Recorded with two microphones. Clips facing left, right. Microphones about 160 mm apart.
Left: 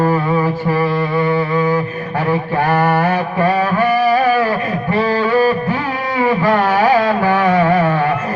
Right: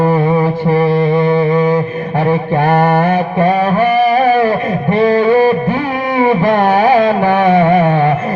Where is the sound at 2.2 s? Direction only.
25° right (ahead or behind).